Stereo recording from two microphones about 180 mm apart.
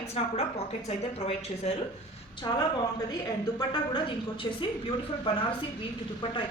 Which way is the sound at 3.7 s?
25° left (ahead or behind).